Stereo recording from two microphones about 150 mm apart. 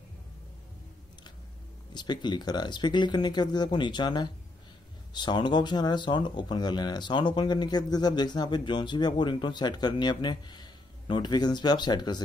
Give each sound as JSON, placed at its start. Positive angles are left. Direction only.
{"t": 2.0, "sound": "speech", "side_deg": 30}